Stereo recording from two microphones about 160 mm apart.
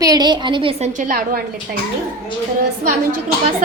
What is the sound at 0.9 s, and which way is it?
Speech, 55° right (ahead or behind).